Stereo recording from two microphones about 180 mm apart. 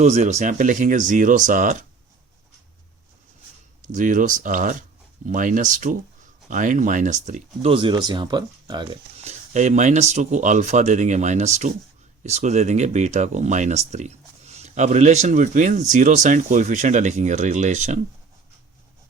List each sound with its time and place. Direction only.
0.0 s speech: 40° right (ahead or behind)
3.9 s speech: 45° right (ahead or behind)